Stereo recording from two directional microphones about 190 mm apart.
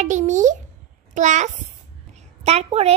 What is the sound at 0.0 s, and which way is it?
A woman's voice, 40° right (ahead or behind).